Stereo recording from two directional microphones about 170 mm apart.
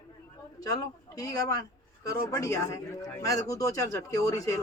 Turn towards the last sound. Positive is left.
turn(degrees=20)  # may be behind; listen again after turning